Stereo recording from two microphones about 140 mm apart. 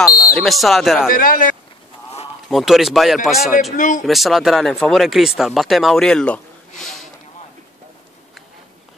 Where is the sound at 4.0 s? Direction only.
Centre (ahead or behind).